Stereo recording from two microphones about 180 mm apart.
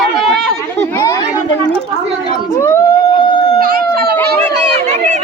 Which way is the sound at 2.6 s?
15° left (ahead or behind).